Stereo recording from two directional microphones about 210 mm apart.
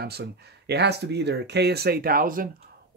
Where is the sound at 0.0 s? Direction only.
50° right (ahead or behind).